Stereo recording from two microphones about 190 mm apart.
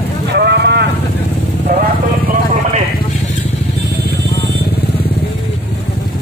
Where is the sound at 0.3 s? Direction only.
60° right (ahead or behind).